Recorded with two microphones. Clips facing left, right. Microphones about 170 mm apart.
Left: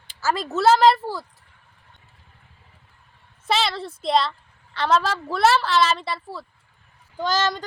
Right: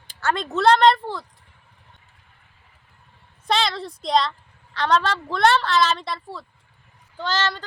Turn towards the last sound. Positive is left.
turn(degrees=10)  # may be behind; listen again after turning